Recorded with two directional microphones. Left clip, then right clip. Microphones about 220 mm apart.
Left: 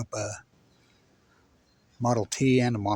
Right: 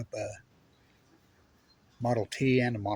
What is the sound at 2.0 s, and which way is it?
Speech, 35° left (ahead or behind).